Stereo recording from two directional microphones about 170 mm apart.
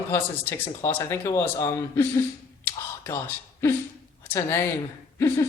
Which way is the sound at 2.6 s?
15° left (ahead or behind).